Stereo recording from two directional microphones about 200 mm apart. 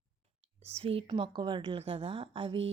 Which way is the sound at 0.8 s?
30° right (ahead or behind).